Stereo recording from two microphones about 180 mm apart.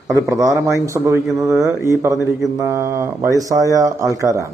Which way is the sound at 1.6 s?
15° right (ahead or behind).